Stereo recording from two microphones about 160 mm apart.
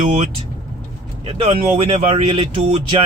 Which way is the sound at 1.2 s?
40° right (ahead or behind).